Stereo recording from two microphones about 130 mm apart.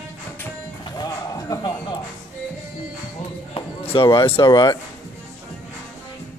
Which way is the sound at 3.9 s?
45° left (ahead or behind).